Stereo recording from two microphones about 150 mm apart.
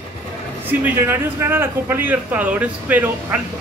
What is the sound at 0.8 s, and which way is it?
A man's voice, 15° right (ahead or behind).